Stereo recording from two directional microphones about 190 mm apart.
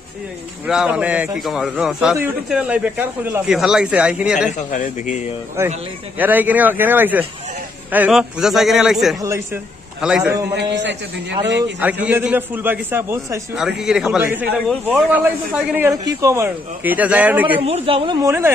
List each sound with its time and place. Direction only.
0.7 s a man's voice: 5° right (ahead or behind)
4.5 s a man's voice: 40° left (ahead or behind)
6.1 s a man's voice: 10° right (ahead or behind)
9.2 s speech: 15° right (ahead or behind)
9.9 s a man's voice: 5° right (ahead or behind)
10.5 s a man's voice: 65° right (ahead or behind)
11.8 s a man's voice: 10° right (ahead or behind)
17.6 s speech: 30° right (ahead or behind); by 18.5 s 15° right (ahead or behind)